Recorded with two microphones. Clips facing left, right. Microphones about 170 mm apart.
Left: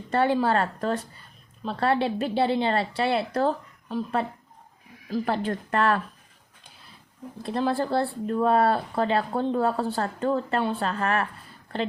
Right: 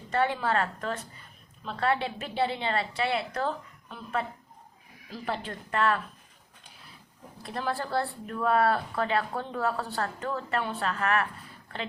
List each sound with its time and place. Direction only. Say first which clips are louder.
0.1 s speech: left 5 dB; 35° left (ahead or behind)
5.1 s speech: left 8 dB; 45° left (ahead or behind)
7.4 s speech: left 7 dB; 30° left (ahead or behind)